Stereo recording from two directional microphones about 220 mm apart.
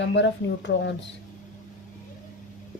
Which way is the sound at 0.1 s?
55° left (ahead or behind).